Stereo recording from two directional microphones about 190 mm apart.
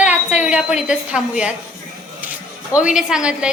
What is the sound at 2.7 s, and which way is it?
Speech, 5° right (ahead or behind).